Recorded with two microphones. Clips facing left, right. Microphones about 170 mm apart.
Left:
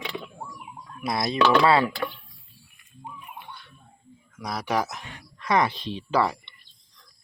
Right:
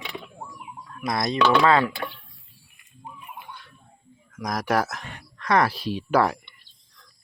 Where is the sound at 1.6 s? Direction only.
35° left (ahead or behind).